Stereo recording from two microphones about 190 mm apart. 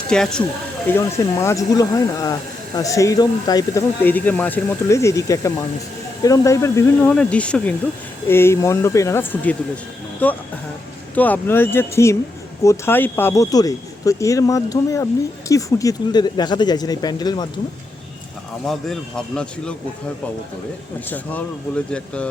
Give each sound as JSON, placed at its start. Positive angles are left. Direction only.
{"t": 0.1, "sound": "speech", "side_deg": 5}
{"t": 18.6, "sound": "speech", "side_deg": 0}
{"t": 21.9, "sound": "speech", "side_deg": 5}